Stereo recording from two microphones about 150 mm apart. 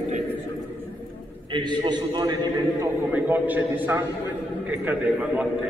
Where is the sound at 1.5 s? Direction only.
30° right (ahead or behind).